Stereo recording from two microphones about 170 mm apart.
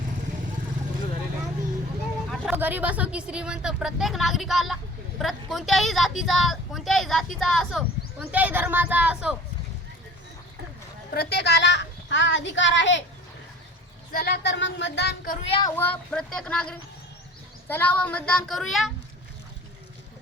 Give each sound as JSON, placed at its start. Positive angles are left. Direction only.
{"t": 2.3, "sound": "speech", "side_deg": -10}
{"t": 11.1, "sound": "a child's voice", "side_deg": 70}
{"t": 14.1, "sound": "speech", "side_deg": 60}
{"t": 15.7, "sound": "speech", "side_deg": 10}